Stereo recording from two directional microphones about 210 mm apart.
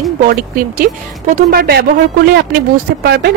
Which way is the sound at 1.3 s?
45° right (ahead or behind).